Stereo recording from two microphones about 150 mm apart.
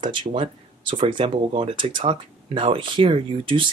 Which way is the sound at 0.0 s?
35° right (ahead or behind).